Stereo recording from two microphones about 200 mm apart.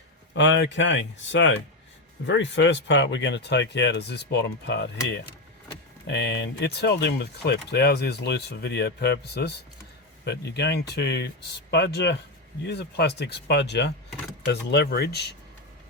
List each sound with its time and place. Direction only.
0.3 s speech: 65° left (ahead or behind)